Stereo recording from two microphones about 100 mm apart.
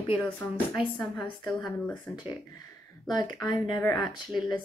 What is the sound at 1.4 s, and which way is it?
Speech, centre (ahead or behind).